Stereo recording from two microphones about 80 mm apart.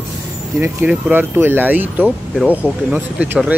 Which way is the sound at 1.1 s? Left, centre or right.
Right.